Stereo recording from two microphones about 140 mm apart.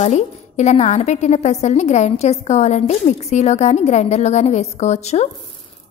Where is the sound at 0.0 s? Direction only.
50° left (ahead or behind).